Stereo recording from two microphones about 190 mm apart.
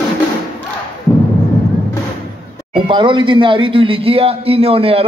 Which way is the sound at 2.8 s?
25° right (ahead or behind).